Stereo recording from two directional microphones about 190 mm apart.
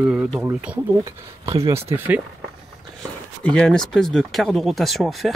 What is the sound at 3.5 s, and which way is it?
Speech, 5° left (ahead or behind).